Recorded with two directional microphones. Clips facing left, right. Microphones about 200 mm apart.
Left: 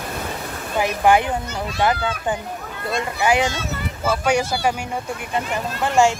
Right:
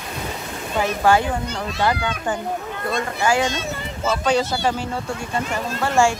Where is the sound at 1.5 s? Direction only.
5° left (ahead or behind).